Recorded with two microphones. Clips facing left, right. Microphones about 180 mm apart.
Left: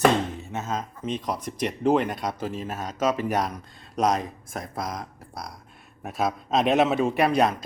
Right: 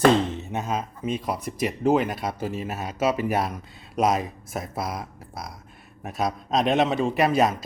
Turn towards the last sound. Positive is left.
turn(degrees=-5)  # may be behind; listen again after turning